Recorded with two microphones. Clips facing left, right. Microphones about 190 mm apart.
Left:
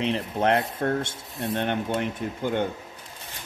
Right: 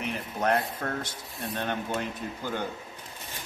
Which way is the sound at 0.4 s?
25° left (ahead or behind).